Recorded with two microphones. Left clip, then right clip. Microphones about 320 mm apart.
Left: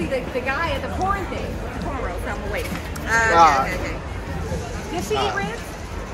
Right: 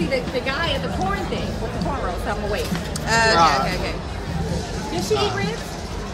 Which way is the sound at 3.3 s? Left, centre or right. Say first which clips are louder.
Left 5 dB; centre.